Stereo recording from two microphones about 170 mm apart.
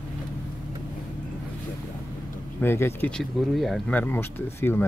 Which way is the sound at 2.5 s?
15° left (ahead or behind).